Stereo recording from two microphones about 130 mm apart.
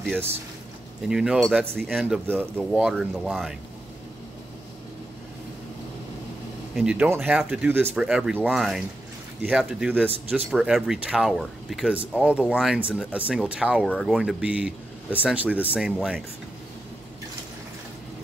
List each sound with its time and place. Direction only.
1.0 s speech: 5° right (ahead or behind)
2.2 s speech: 15° right (ahead or behind)
2.7 s speech: centre (ahead or behind)
6.7 s speech: 5° right (ahead or behind)